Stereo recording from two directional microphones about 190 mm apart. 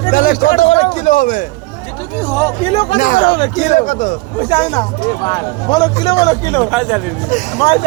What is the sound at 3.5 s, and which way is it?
Speech, 40° left (ahead or behind).